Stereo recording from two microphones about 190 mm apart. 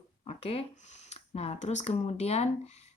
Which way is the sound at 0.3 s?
30° left (ahead or behind).